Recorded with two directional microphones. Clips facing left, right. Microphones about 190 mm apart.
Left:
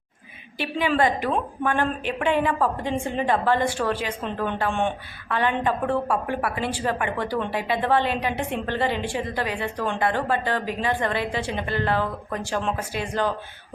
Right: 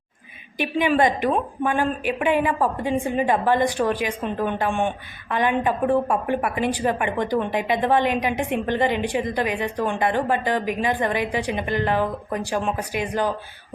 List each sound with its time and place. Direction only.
0.6 s a woman's voice: 15° right (ahead or behind)